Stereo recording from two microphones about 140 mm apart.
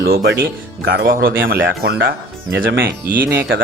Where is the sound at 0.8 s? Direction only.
90° right.